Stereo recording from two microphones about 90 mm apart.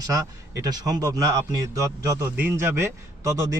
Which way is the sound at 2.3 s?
25° right (ahead or behind).